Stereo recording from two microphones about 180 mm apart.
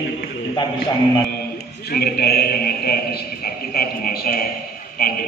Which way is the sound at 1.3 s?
60° left (ahead or behind).